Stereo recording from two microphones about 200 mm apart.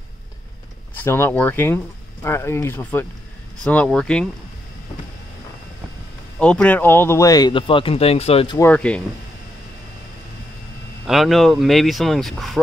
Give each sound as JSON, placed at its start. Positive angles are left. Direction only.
{"t": 0.9, "sound": "speech", "side_deg": 10}
{"t": 6.4, "sound": "speech", "side_deg": 5}
{"t": 8.5, "sound": "speech", "side_deg": 10}
{"t": 11.1, "sound": "speech", "side_deg": 0}